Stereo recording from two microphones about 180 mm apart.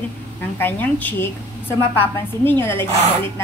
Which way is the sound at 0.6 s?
10° left (ahead or behind).